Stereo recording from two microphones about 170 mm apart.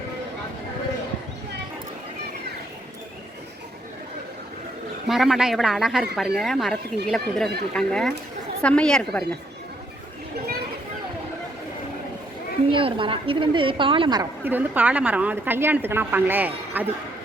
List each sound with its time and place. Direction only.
5.0 s speech: centre (ahead or behind)
12.7 s a woman's voice: 30° right (ahead or behind)
14.4 s a woman's voice: 10° right (ahead or behind)